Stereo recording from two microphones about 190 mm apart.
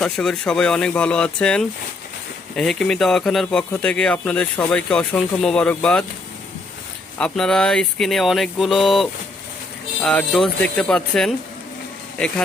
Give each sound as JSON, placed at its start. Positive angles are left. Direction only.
{"t": 0.0, "sound": "speech", "side_deg": 5}
{"t": 7.2, "sound": "speech", "side_deg": 5}